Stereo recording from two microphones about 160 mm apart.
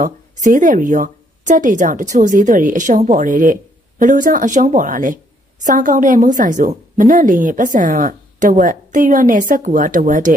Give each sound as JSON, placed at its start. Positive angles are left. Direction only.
{"t": 0.0, "sound": "a woman's voice", "side_deg": -55}